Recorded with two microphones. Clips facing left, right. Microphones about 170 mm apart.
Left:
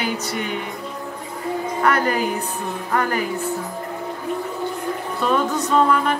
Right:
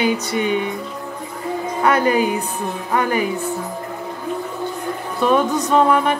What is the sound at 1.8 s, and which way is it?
Speech, 20° right (ahead or behind).